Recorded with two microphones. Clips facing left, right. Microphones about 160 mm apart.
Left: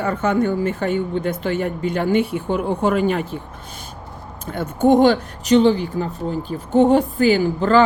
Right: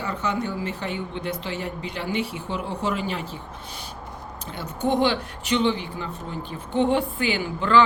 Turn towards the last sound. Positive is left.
turn(degrees=40)  # may be behind; listen again after turning